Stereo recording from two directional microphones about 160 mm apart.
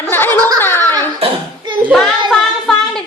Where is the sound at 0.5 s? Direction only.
15° left (ahead or behind).